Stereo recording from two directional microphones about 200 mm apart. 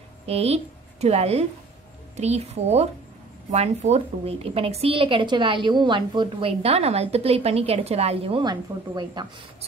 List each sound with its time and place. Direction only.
0.3 s a woman's voice: 30° right (ahead or behind)